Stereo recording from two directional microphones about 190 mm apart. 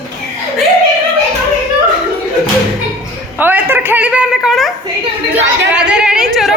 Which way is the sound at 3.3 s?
10° right (ahead or behind).